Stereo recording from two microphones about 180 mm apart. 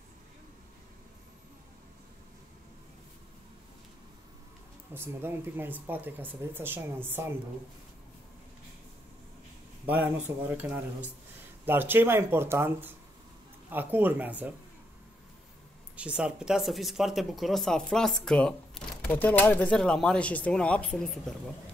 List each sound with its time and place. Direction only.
4.9 s speech: 10° right (ahead or behind)
9.8 s speech: 10° right (ahead or behind)
16.0 s speech: 5° right (ahead or behind)